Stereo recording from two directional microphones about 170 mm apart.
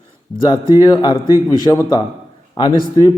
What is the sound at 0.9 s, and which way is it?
Speech, 30° left (ahead or behind).